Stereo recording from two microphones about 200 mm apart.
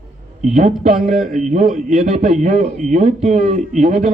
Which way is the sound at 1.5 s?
35° right (ahead or behind).